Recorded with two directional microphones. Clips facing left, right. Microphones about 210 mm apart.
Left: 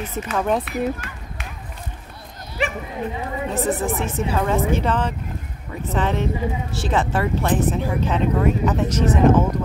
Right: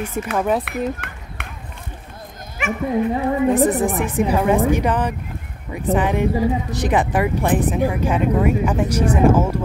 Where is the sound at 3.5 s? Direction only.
15° right (ahead or behind).